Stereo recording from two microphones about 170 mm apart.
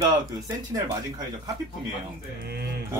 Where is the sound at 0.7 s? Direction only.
20° right (ahead or behind).